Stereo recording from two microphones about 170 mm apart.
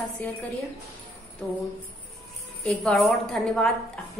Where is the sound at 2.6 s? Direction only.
5° left (ahead or behind).